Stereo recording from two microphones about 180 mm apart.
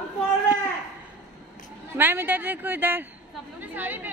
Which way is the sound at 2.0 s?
10° right (ahead or behind).